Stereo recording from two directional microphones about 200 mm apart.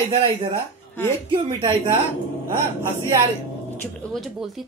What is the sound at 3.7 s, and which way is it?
Speech, 10° left (ahead or behind).